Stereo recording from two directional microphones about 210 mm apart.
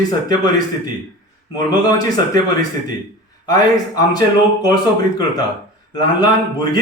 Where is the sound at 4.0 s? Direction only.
15° left (ahead or behind).